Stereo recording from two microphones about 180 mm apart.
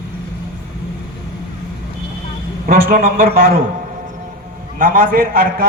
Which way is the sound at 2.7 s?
55° right (ahead or behind).